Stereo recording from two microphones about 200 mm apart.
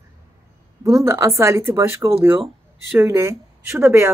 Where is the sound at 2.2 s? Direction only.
Centre (ahead or behind).